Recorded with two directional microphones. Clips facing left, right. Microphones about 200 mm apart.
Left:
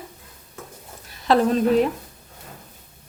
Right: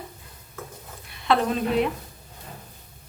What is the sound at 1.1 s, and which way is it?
Speech, 40° left (ahead or behind).